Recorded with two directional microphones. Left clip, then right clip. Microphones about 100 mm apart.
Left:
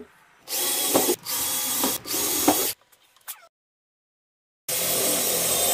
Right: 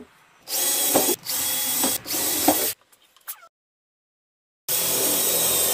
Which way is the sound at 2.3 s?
Centre (ahead or behind).